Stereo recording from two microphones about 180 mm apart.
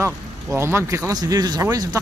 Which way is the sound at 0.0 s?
15° right (ahead or behind).